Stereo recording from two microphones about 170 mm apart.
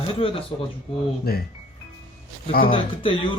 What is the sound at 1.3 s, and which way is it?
Speech, 65° left (ahead or behind).